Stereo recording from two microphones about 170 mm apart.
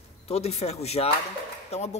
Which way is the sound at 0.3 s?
40° left (ahead or behind).